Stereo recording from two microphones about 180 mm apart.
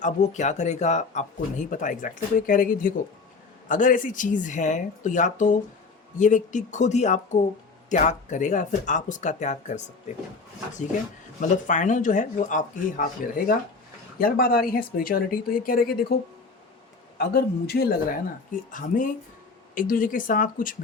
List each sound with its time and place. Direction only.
0.0 s speech: 40° left (ahead or behind)
11.3 s speech: 45° left (ahead or behind)
17.2 s speech: 65° left (ahead or behind)
18.7 s speech: 45° left (ahead or behind)